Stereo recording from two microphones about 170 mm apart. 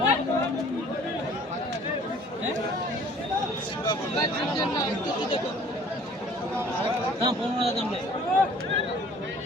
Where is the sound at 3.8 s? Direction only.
25° left (ahead or behind).